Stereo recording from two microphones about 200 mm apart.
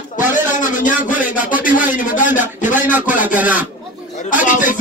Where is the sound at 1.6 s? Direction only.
40° left (ahead or behind).